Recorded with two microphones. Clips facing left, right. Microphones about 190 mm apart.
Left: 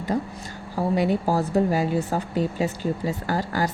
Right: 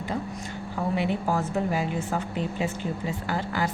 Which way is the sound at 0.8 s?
40° left (ahead or behind).